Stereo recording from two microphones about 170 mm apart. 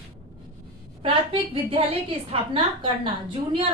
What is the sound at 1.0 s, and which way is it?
A woman's voice, 30° right (ahead or behind).